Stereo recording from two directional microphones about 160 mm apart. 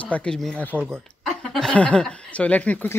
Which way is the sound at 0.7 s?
15° right (ahead or behind).